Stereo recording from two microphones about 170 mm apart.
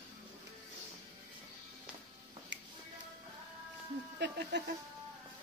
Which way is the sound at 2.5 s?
90° right.